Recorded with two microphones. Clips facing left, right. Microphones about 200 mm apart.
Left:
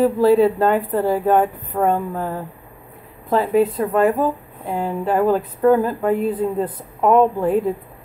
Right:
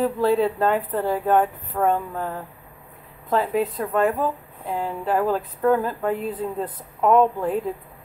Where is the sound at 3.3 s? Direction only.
Centre (ahead or behind).